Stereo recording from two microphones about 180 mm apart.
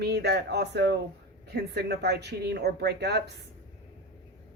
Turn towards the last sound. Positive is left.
turn(degrees=-70)  # may be behind; listen again after turning